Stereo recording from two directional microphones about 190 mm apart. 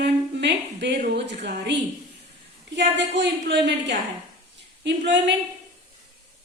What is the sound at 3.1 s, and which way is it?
Speech, 65° right (ahead or behind).